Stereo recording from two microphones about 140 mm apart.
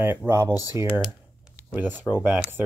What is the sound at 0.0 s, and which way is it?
Speech, 15° right (ahead or behind).